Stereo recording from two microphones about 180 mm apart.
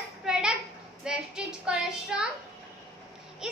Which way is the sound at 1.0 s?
5° right (ahead or behind).